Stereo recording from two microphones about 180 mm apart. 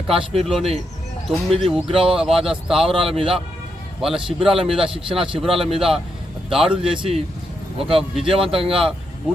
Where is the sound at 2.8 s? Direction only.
30° right (ahead or behind).